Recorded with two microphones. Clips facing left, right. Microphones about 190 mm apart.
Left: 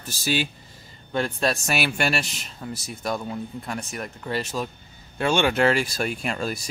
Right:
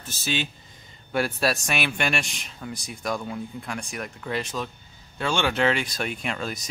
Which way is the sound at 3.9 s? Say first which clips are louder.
Even; 35° left (ahead or behind).